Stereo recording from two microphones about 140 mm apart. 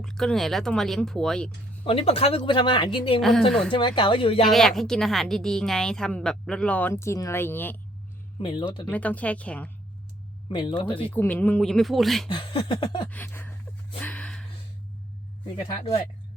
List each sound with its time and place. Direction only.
0.0 s a woman's voice: 5° left (ahead or behind)
1.8 s speech: 45° left (ahead or behind)
3.2 s a woman's voice: centre (ahead or behind)
3.7 s speech: 35° left (ahead or behind)
4.4 s a woman's voice: centre (ahead or behind)
8.4 s speech: 35° left (ahead or behind)
8.9 s speech: 10° left (ahead or behind)
10.5 s speech: 35° left (ahead or behind)
11.1 s a woman's voice: 15° left (ahead or behind)
12.3 s speech: 35° left (ahead or behind)
13.1 s speech: 15° left (ahead or behind)
14.0 s a sound: 10° left (ahead or behind)